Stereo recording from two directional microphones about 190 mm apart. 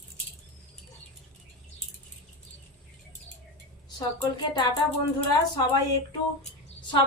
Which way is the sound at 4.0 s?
20° left (ahead or behind).